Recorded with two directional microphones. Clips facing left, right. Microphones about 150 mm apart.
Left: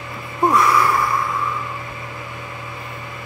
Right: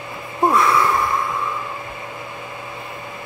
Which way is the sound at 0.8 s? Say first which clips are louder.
Even; 20° right (ahead or behind).